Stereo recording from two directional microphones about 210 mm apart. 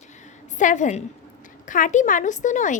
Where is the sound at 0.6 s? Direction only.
35° left (ahead or behind).